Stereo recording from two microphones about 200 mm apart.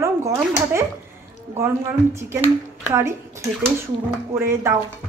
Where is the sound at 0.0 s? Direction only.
15° right (ahead or behind).